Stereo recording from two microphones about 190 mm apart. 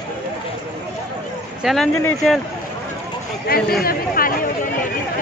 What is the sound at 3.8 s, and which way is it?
Chatter, 50° left (ahead or behind).